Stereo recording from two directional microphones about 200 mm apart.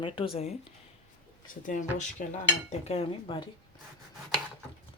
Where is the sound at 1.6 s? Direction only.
40° left (ahead or behind).